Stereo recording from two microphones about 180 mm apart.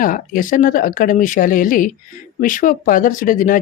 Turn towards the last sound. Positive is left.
turn(degrees=50)  # may be behind; listen again after turning